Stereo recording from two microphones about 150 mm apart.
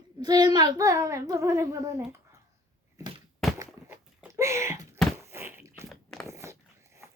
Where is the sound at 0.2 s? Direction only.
30° right (ahead or behind).